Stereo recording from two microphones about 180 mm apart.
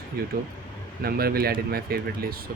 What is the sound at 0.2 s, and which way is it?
Speech, 60° right (ahead or behind).